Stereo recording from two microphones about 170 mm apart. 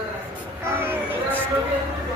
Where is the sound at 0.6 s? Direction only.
15° right (ahead or behind).